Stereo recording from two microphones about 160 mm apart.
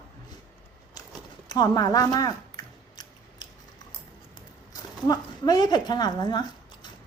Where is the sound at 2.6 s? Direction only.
25° left (ahead or behind).